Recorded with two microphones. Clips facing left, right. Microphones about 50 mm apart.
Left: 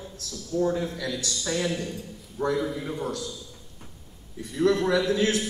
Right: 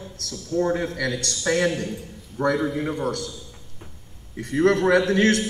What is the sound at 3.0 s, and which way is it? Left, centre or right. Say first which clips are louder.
Speech: right 4 dB; right.